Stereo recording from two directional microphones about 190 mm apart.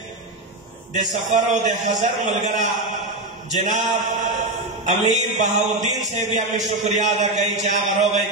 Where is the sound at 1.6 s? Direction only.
40° right (ahead or behind).